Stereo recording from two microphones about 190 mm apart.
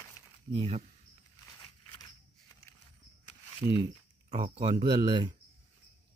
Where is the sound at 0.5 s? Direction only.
30° right (ahead or behind).